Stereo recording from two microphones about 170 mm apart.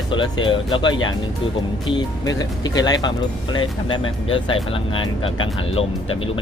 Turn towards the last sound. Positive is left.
turn(degrees=35)  # may be behind; listen again after turning